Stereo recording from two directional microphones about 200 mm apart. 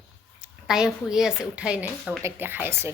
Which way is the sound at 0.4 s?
5° right (ahead or behind).